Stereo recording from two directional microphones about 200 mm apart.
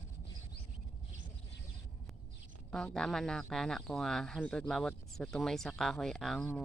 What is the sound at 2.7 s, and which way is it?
Speech, 5° left (ahead or behind).